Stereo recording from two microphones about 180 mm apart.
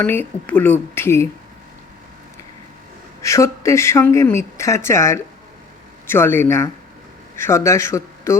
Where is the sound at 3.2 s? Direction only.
15° left (ahead or behind).